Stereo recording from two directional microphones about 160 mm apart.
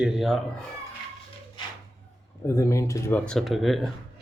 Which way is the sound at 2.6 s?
20° left (ahead or behind).